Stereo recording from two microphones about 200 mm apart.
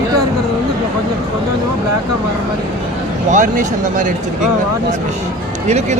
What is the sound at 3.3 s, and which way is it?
Speech, 40° right (ahead or behind).